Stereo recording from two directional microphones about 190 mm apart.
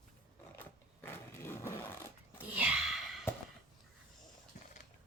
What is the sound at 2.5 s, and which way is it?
Sneeze, 5° right (ahead or behind).